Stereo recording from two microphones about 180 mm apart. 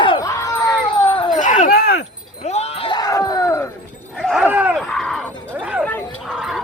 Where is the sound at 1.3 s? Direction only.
45° left (ahead or behind); by 2.1 s 60° left (ahead or behind).